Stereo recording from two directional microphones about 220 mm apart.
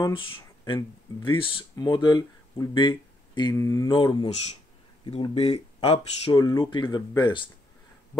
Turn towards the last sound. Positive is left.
turn(degrees=20)  # may be behind; listen again after turning